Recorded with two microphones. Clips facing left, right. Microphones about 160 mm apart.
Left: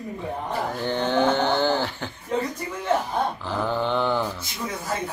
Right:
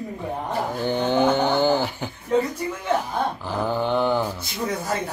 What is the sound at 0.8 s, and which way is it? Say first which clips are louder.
A man's voice: right 2 dB; 10° right (ahead or behind).